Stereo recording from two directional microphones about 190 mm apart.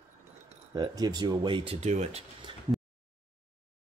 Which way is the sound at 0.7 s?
20° right (ahead or behind).